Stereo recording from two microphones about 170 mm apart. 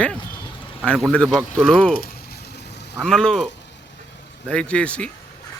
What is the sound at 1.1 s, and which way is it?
Speech, 5° left (ahead or behind).